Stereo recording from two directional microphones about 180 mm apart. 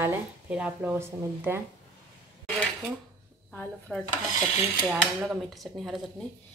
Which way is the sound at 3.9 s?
5° left (ahead or behind).